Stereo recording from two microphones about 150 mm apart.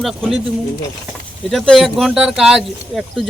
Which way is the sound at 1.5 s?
Centre (ahead or behind).